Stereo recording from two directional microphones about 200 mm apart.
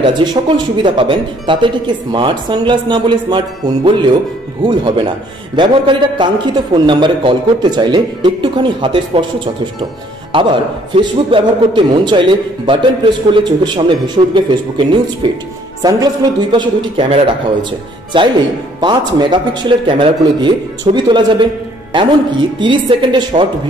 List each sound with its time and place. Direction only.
0.0 s a man's voice: 20° right (ahead or behind)
10.3 s a man's voice: 25° right (ahead or behind)